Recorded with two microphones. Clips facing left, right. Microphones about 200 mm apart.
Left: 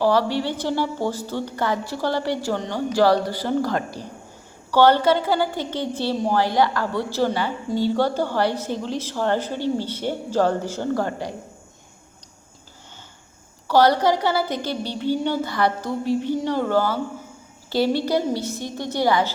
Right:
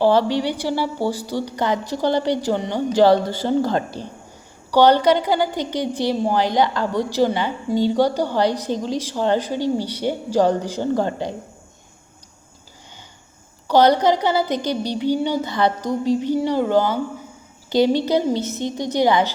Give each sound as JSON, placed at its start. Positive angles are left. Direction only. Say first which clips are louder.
{"t": 0.0, "sound": "a woman's voice", "louder": "right 3 dB", "side_deg": -25}
{"t": 13.7, "sound": "a woman's voice", "louder": "right 2 dB", "side_deg": -20}